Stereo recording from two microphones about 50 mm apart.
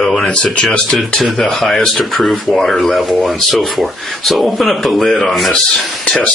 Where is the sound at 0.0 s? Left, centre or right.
Centre.